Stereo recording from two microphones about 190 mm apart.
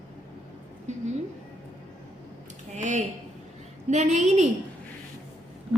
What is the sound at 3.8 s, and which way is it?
Speech, 40° right (ahead or behind).